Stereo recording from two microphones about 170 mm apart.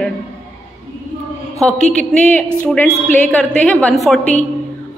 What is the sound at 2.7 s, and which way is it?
A woman's voice, 5° left (ahead or behind).